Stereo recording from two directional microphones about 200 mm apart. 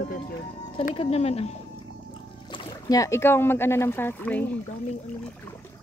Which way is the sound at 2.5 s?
20° left (ahead or behind).